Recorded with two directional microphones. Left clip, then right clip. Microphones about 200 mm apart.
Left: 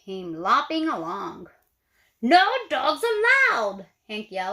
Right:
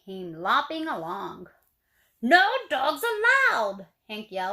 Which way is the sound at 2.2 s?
25° left (ahead or behind).